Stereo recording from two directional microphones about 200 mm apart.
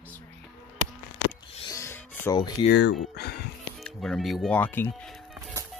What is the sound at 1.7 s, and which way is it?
Music, 15° left (ahead or behind).